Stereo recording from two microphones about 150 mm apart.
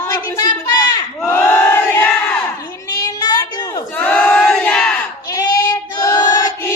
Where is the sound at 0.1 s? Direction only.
20° left (ahead or behind).